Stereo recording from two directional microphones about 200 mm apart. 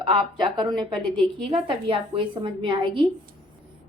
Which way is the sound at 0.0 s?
25° right (ahead or behind).